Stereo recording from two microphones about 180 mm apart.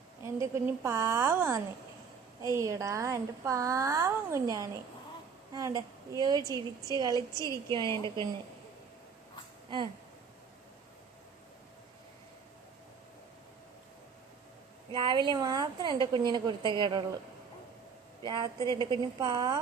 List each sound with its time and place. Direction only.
0.3 s a woman's voice: 15° right (ahead or behind)
9.6 s speech: 25° right (ahead or behind)
14.8 s a woman's voice: 25° right (ahead or behind)
18.3 s a woman's voice: 25° right (ahead or behind)